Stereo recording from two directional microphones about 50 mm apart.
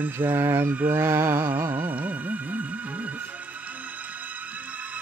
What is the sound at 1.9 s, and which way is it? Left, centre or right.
Music, right.